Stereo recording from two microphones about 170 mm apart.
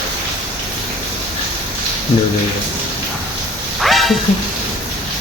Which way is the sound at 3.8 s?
Centre (ahead or behind).